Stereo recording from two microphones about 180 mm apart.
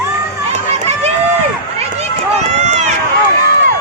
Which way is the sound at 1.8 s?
35° right (ahead or behind).